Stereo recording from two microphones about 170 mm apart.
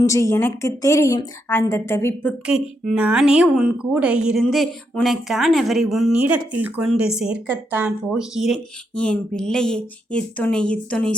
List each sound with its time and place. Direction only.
0.0 s a woman's voice: 15° left (ahead or behind)
2.5 s speech: 5° right (ahead or behind)